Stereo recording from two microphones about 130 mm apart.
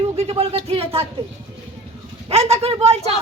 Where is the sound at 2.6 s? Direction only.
50° right (ahead or behind).